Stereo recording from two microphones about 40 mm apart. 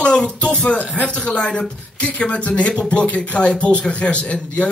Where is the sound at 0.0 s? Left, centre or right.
Left.